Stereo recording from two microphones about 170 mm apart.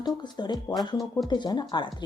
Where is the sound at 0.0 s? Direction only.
25° left (ahead or behind).